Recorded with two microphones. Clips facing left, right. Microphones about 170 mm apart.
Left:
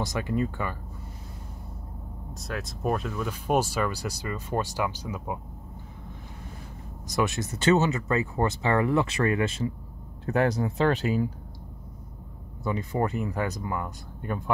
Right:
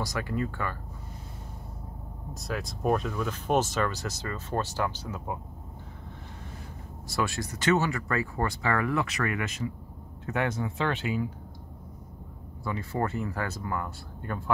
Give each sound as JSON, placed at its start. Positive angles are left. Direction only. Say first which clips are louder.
{"t": 0.0, "sound": "speech", "louder": "left 3 dB", "side_deg": 20}
{"t": 2.3, "sound": "speech", "louder": "right 1 dB", "side_deg": 0}
{"t": 7.1, "sound": "speech", "louder": "left 3 dB", "side_deg": 20}
{"t": 12.6, "sound": "speech", "louder": "left 3 dB", "side_deg": 20}